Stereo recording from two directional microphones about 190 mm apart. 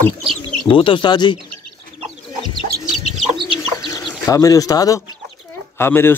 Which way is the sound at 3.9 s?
15° left (ahead or behind).